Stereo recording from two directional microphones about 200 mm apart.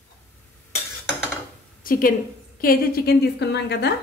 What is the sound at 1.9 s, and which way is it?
A woman's voice, 45° left (ahead or behind).